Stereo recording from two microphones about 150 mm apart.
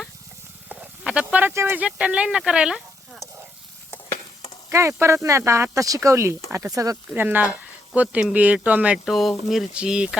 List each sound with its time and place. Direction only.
0.7 s speech: 5° right (ahead or behind)
4.7 s speech: 20° right (ahead or behind)